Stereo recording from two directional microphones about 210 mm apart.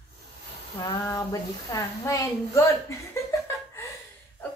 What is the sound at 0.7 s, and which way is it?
A woman's voice, 15° left (ahead or behind).